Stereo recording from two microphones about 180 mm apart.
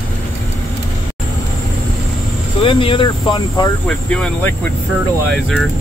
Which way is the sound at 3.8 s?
5° left (ahead or behind).